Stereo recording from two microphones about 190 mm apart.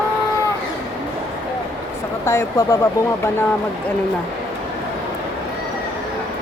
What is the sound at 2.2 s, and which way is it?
Speech, 15° left (ahead or behind).